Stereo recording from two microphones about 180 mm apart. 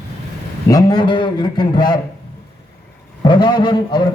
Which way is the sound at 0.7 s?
20° left (ahead or behind).